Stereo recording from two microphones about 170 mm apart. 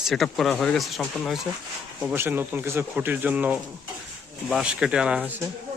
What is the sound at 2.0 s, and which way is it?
Speech, 10° right (ahead or behind).